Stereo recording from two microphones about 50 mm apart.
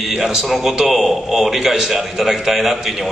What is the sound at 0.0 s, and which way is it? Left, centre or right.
A man's voice, centre.